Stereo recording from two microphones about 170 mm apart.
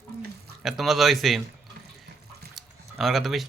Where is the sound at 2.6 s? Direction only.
Centre (ahead or behind).